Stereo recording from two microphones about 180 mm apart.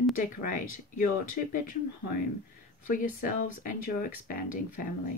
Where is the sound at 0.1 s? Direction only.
50° left (ahead or behind).